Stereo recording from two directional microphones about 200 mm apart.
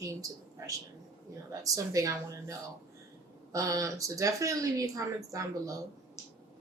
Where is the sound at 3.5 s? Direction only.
15° right (ahead or behind).